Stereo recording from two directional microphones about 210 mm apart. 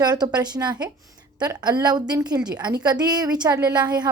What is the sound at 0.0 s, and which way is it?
A woman's voice, 20° right (ahead or behind).